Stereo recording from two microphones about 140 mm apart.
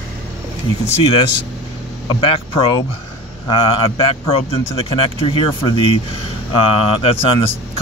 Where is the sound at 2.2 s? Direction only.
40° left (ahead or behind).